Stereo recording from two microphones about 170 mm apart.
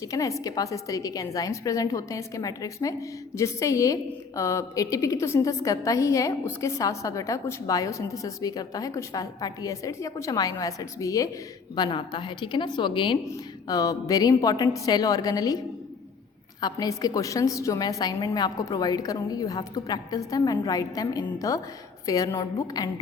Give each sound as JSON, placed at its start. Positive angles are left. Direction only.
{"t": 0.0, "sound": "a woman's voice", "side_deg": 20}
{"t": 16.6, "sound": "a woman's voice", "side_deg": 25}